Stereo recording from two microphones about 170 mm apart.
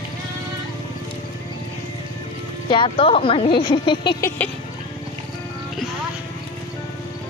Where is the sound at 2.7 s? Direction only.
30° left (ahead or behind).